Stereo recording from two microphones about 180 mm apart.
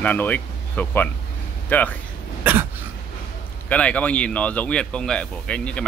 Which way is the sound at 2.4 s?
10° right (ahead or behind).